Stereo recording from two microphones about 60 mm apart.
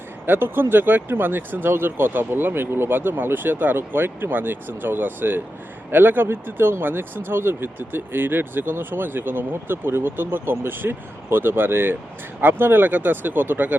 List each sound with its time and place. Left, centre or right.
0.3 s speech: right